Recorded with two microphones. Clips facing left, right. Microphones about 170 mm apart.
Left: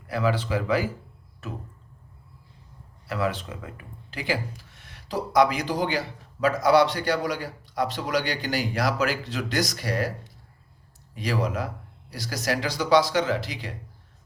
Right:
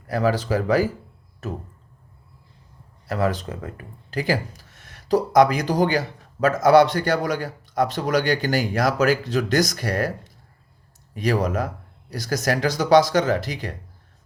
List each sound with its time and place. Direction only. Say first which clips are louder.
0.1 s speech: right 4 dB; 40° right (ahead or behind)
3.1 s speech: right 4 dB; 40° right (ahead or behind)